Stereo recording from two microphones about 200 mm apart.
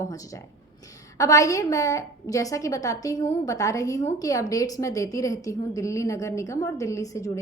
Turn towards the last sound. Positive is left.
turn(degrees=15)  # may be behind; listen again after turning